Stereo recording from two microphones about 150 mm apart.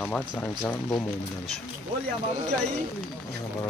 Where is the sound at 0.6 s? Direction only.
25° left (ahead or behind).